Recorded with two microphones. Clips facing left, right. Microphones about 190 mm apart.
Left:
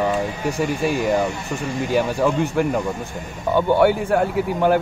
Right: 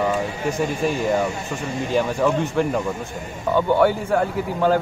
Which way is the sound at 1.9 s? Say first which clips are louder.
Even; 10° left (ahead or behind).